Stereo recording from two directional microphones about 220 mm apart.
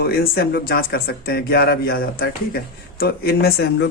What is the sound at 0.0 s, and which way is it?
Speech, 45° left (ahead or behind).